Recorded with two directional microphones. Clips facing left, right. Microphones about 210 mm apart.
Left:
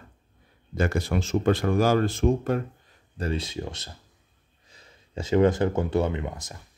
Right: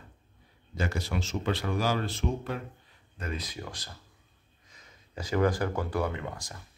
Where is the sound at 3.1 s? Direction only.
30° left (ahead or behind).